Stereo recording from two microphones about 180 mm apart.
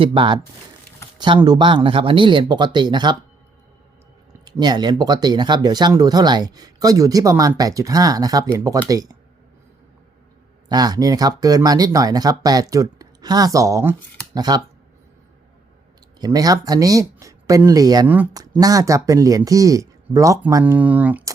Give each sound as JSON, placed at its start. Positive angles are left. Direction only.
{"t": 0.0, "sound": "speech", "side_deg": -30}
{"t": 1.5, "sound": "speech", "side_deg": -25}
{"t": 4.4, "sound": "speech", "side_deg": -20}
{"t": 10.7, "sound": "speech", "side_deg": -20}
{"t": 16.2, "sound": "speech", "side_deg": -20}